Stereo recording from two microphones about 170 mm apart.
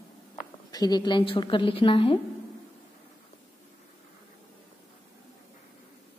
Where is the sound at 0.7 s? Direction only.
25° left (ahead or behind).